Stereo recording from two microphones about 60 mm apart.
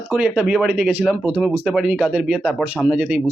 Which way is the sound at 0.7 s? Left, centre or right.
Right.